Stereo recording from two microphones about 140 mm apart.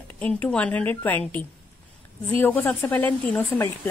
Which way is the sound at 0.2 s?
10° left (ahead or behind).